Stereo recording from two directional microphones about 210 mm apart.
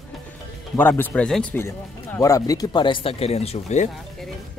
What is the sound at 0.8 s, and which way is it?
Speech, 10° left (ahead or behind).